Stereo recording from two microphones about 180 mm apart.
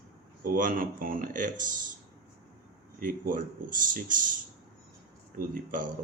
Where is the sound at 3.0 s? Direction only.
50° right (ahead or behind).